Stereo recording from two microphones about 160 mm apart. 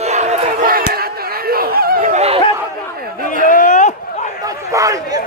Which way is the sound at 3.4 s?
55° left (ahead or behind).